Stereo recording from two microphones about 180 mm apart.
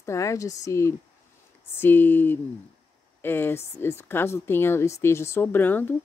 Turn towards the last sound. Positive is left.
turn(degrees=10)  # may be behind; listen again after turning